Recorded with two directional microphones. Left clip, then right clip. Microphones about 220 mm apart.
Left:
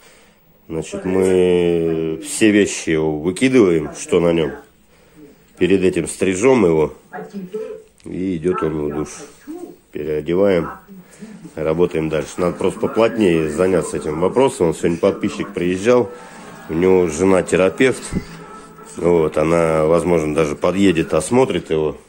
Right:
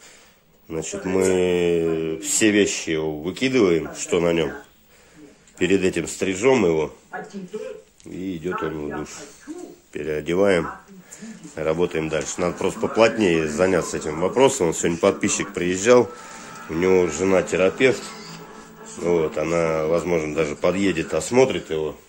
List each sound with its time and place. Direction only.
0.7 s speech: 5° left (ahead or behind)
2.5 s speech: 15° left (ahead or behind)
5.6 s speech: centre (ahead or behind)
8.2 s speech: 20° left (ahead or behind)
9.9 s speech: centre (ahead or behind)
15.5 s speech: centre (ahead or behind); by 21.9 s 20° left (ahead or behind)